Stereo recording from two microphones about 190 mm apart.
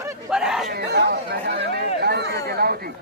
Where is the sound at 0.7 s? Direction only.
60° right (ahead or behind).